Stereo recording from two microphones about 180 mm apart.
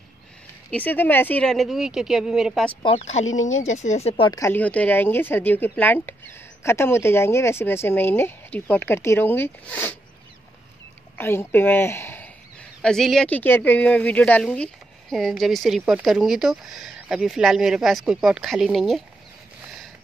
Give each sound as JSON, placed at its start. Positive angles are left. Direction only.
{"t": 0.7, "sound": "speech", "side_deg": 10}
{"t": 2.8, "sound": "speech", "side_deg": 35}
{"t": 3.3, "sound": "speech", "side_deg": 90}
{"t": 3.7, "sound": "speech", "side_deg": 40}
{"t": 4.3, "sound": "speech", "side_deg": 15}
{"t": 11.1, "sound": "speech", "side_deg": 10}